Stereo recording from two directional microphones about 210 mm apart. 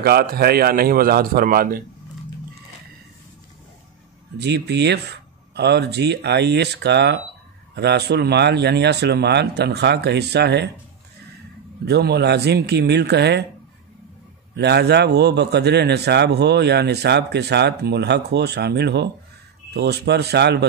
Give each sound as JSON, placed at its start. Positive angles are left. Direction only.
{"t": 0.0, "sound": "a man's voice", "side_deg": -50}
{"t": 4.4, "sound": "a man's voice", "side_deg": -55}
{"t": 11.8, "sound": "a man's voice", "side_deg": -50}
{"t": 14.5, "sound": "a man's voice", "side_deg": -50}